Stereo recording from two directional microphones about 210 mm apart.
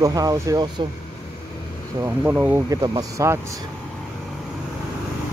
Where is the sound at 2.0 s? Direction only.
10° right (ahead or behind).